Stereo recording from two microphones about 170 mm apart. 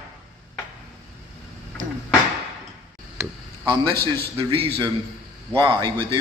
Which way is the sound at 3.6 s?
30° right (ahead or behind).